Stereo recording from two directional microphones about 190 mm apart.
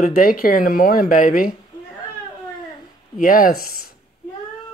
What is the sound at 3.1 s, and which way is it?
Speech, 45° left (ahead or behind).